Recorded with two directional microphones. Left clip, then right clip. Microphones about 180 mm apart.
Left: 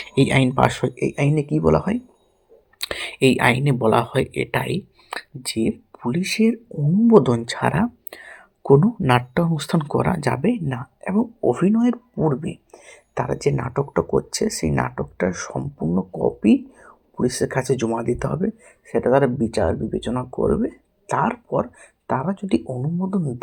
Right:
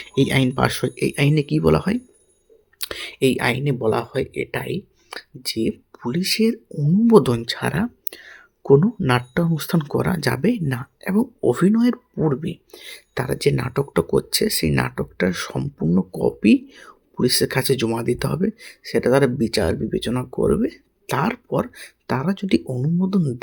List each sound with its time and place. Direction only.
0.2 s speech: 20° right (ahead or behind)
1.5 s speech: 40° right (ahead or behind)
2.8 s speech: 10° right (ahead or behind); by 15.5 s 45° right (ahead or behind)
15.5 s speech: 30° right (ahead or behind)
16.4 s speech: 45° right (ahead or behind)
22.6 s speech: 30° right (ahead or behind)
23.0 s speech: 50° right (ahead or behind)